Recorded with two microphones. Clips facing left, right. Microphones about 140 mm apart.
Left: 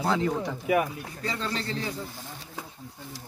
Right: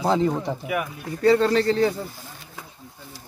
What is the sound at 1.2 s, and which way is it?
Speech, 60° right (ahead or behind).